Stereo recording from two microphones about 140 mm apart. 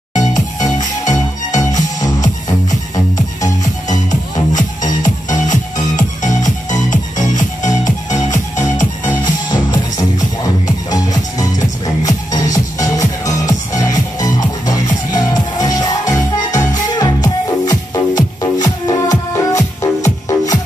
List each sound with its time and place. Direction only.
0.1 s music: 25° left (ahead or behind)
1.6 s music: 25° left (ahead or behind)
4.1 s music: 30° left (ahead or behind)
5.0 s music: 65° left (ahead or behind)
9.2 s music: 30° left (ahead or behind)